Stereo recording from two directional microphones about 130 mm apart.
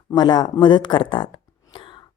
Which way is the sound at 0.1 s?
35° left (ahead or behind).